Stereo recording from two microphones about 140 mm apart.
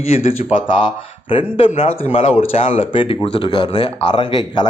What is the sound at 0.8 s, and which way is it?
A man's voice, 35° left (ahead or behind).